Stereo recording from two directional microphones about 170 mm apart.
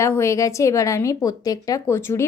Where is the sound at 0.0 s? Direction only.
15° left (ahead or behind).